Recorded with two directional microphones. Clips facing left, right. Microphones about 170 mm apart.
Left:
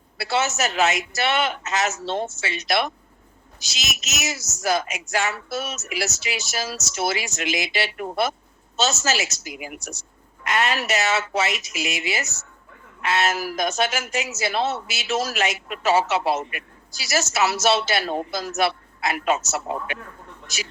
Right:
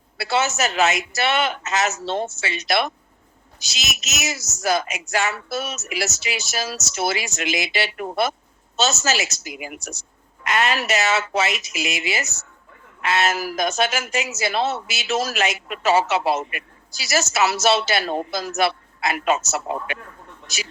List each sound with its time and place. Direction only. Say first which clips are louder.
0.5 s speech: right 1 dB; 85° right
4.0 s speech: right 1 dB; 75° right (ahead or behind); by 16.6 s 90° right
17.2 s speech: right 1 dB; 80° right